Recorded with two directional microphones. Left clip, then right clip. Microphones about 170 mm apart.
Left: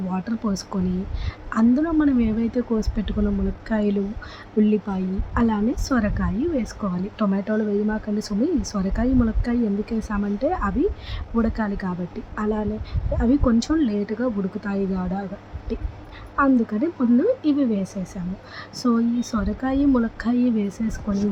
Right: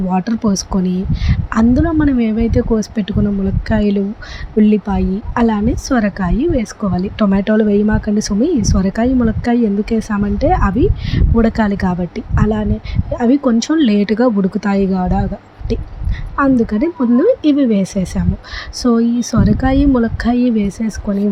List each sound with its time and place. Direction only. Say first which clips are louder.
0.1 s a woman's voice: right 11 dB; 35° right (ahead or behind)
13.7 s a woman's voice: right 10 dB; 40° right (ahead or behind)